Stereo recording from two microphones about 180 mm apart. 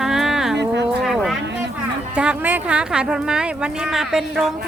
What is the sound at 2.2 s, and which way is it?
Speech, 10° right (ahead or behind).